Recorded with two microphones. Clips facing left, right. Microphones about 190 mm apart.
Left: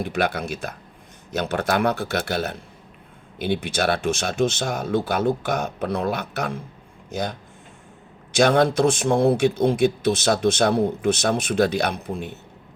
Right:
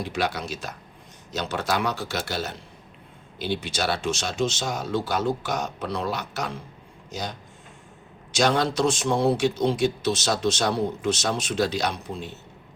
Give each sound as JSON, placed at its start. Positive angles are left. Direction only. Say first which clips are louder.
{"t": 0.0, "sound": "speech", "louder": "left 4 dB", "side_deg": 55}